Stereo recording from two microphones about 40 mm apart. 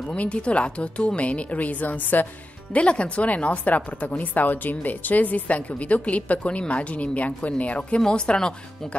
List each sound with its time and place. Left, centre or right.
0.1 s speech: left
2.7 s speech: left
8.0 s speech: left